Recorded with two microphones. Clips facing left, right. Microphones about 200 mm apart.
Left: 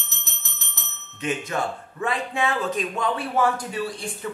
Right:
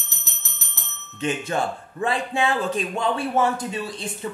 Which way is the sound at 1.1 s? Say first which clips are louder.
Right 2 dB; 30° right (ahead or behind).